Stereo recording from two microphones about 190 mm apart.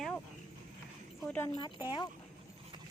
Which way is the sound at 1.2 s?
5° left (ahead or behind).